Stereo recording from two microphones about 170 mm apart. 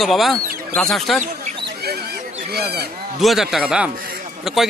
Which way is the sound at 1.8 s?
65° right (ahead or behind).